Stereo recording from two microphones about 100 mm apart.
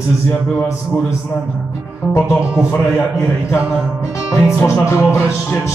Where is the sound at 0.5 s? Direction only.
30° left (ahead or behind).